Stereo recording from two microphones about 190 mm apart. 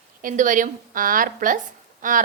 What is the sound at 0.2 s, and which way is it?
A woman's voice, 45° right (ahead or behind).